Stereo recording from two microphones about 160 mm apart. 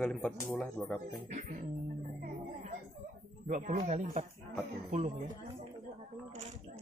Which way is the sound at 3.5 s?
50° right (ahead or behind).